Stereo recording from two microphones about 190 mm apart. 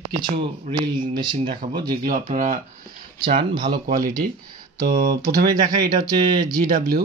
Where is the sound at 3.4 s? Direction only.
25° right (ahead or behind).